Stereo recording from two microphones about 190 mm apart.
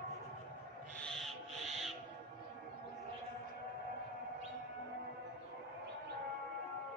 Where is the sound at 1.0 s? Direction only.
Centre (ahead or behind).